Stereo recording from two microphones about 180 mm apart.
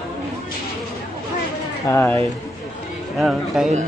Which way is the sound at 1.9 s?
10° left (ahead or behind).